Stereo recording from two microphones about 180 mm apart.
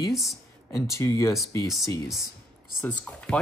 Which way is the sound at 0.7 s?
15° left (ahead or behind).